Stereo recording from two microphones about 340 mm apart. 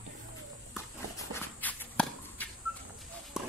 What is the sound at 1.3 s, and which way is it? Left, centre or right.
Walk, centre.